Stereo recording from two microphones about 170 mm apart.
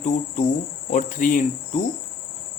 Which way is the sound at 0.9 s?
45° left (ahead or behind).